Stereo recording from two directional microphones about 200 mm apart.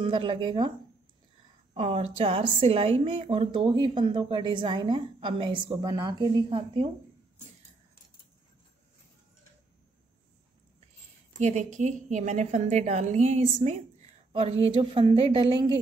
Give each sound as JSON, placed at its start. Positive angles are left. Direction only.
{"t": 0.0, "sound": "a woman's voice", "side_deg": -25}
{"t": 1.7, "sound": "a woman's voice", "side_deg": -30}
{"t": 11.3, "sound": "a woman's voice", "side_deg": -35}
{"t": 14.8, "sound": "a woman's voice", "side_deg": -25}